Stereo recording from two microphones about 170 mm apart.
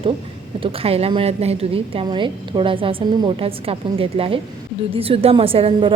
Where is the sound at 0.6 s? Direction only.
35° right (ahead or behind).